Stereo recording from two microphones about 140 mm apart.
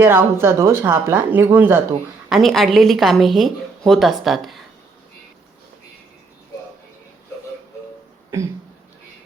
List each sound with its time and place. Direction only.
0.0 s speech: 15° right (ahead or behind)
2.3 s a woman's voice: centre (ahead or behind)